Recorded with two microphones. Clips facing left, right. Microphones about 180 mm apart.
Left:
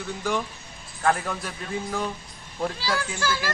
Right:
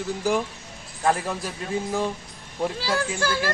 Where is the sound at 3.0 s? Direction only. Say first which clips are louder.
Right 3 dB; 50° right (ahead or behind).